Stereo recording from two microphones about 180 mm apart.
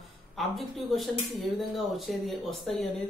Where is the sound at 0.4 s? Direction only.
Centre (ahead or behind).